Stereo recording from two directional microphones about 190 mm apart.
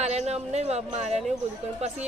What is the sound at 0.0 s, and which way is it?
Speech, 35° right (ahead or behind).